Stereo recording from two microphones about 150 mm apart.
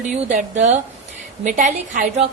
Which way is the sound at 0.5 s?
50° right (ahead or behind).